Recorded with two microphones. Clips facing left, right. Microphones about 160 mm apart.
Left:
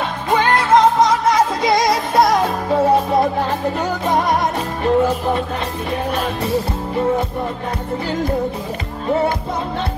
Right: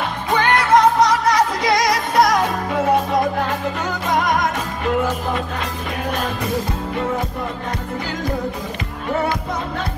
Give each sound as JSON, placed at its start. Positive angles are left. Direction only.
{"t": 0.4, "sound": "music", "side_deg": 25}